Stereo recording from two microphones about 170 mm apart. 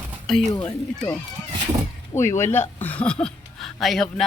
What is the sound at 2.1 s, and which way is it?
Speech, 15° left (ahead or behind).